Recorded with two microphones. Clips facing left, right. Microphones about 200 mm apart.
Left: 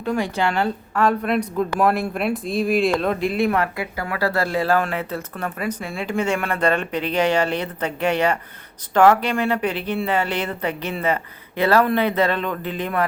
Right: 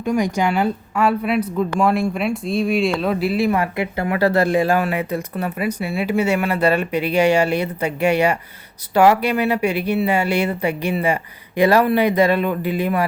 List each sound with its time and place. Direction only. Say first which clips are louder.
0.0 s speech: right 3 dB; 15° right (ahead or behind)
3.8 s speech: right 5 dB; 20° right (ahead or behind)